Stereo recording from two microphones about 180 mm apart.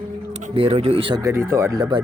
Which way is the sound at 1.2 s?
15° right (ahead or behind).